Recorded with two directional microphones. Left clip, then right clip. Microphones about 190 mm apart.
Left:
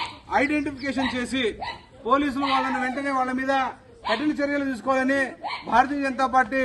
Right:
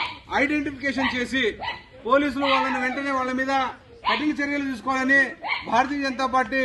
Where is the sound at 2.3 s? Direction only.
5° left (ahead or behind).